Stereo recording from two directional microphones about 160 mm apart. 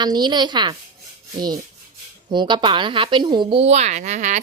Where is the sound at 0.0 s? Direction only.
25° right (ahead or behind).